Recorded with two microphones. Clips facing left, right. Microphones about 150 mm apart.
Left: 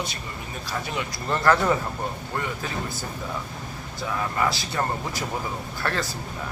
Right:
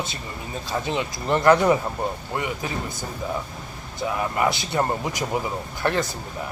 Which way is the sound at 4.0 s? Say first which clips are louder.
Right 3 dB; 20° right (ahead or behind).